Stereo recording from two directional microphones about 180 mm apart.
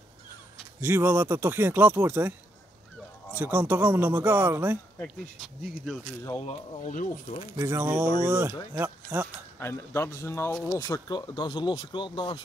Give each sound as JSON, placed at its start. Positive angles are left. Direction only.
{"t": 0.7, "sound": "speech", "side_deg": -15}
{"t": 3.3, "sound": "speech", "side_deg": -10}
{"t": 5.0, "sound": "speech", "side_deg": 0}
{"t": 6.4, "sound": "speech", "side_deg": 40}
{"t": 7.5, "sound": "speech", "side_deg": -15}
{"t": 9.6, "sound": "speech", "side_deg": 15}